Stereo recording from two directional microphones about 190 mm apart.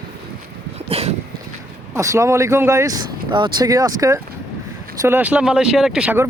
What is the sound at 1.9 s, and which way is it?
Speech, 15° right (ahead or behind).